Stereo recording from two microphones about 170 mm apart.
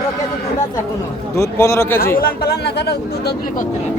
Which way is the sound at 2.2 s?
65° left (ahead or behind).